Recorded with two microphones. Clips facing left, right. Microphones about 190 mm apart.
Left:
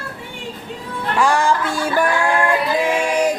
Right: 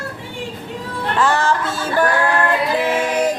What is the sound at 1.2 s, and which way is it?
Music, 15° left (ahead or behind).